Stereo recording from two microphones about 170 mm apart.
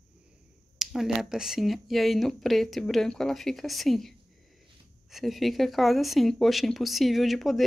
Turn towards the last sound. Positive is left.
turn(degrees=0)  # may be behind; listen again after turning